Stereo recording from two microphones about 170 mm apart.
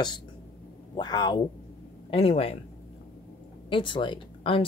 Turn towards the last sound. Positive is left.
turn(degrees=30)  # may be behind; listen again after turning